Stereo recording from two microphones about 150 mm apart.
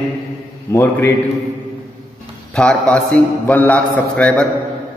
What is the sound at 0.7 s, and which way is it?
Speech, 20° left (ahead or behind).